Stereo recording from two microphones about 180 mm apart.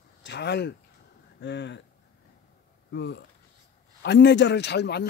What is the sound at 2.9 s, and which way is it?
A man's voice, 75° left (ahead or behind).